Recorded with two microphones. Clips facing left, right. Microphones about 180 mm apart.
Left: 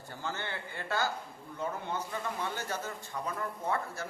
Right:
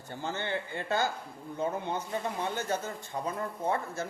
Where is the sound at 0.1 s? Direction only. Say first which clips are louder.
Right 5 dB; 20° right (ahead or behind).